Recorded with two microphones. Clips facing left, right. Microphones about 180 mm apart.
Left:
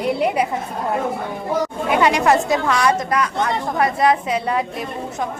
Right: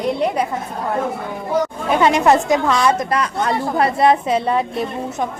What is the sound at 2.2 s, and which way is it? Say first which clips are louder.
A woman's voice: right 2 dB; 20° right (ahead or behind).